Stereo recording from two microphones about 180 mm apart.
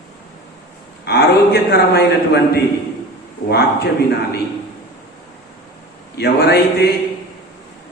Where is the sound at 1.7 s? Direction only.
65° left (ahead or behind).